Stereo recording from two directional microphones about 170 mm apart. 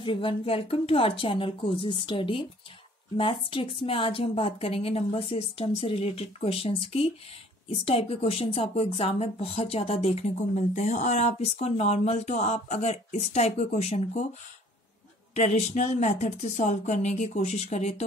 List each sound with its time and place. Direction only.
0.0 s speech: 30° left (ahead or behind)
15.3 s a woman's voice: 40° left (ahead or behind)